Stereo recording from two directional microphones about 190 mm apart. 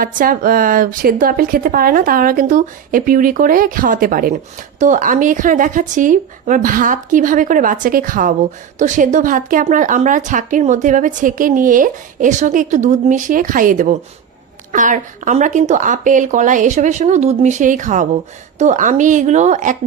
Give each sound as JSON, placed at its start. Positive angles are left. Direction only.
{"t": 0.0, "sound": "a woman's voice", "side_deg": -50}